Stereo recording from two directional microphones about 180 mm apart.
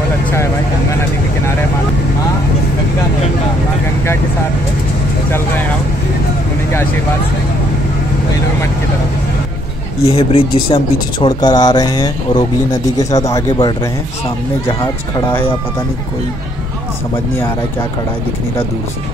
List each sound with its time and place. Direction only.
10.0 s speech: 30° left (ahead or behind)